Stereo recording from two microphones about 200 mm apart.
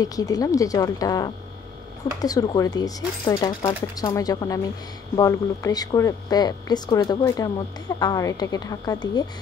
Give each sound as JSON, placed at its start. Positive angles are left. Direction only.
{"t": 0.0, "sound": "a woman's voice", "side_deg": 20}